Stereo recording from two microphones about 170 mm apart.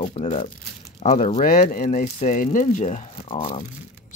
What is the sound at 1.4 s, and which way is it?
Speech, 55° left (ahead or behind).